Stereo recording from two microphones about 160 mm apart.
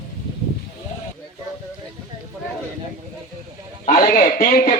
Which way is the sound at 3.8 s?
55° left (ahead or behind).